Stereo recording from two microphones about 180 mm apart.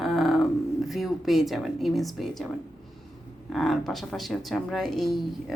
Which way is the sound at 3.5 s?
Centre (ahead or behind).